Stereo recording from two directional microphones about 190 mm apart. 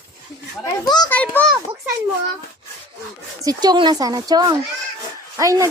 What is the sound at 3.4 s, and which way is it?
A child's voice, 20° right (ahead or behind).